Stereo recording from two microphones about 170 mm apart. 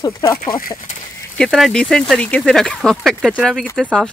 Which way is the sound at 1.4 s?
Centre (ahead or behind).